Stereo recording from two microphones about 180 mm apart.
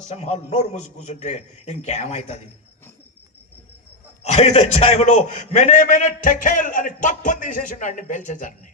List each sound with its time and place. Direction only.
0.1 s a man's voice: 40° left (ahead or behind)
4.2 s a man's voice: 35° left (ahead or behind)